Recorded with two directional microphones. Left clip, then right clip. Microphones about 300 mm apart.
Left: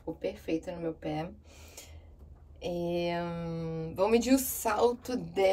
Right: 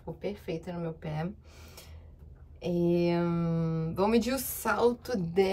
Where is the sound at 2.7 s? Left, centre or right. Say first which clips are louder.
Right 4 dB; right.